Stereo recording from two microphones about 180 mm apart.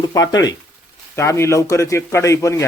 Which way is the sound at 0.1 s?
20° left (ahead or behind).